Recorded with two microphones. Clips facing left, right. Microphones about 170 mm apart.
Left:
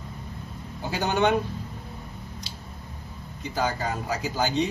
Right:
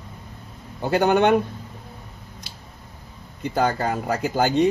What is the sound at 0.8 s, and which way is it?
Speech, 60° right (ahead or behind).